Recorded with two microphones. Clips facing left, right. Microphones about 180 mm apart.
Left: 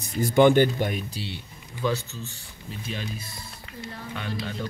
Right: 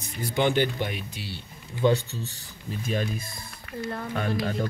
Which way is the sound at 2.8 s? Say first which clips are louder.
Right 6 dB; 50° right (ahead or behind).